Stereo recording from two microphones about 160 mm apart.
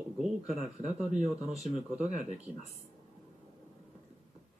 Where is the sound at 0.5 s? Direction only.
45° right (ahead or behind).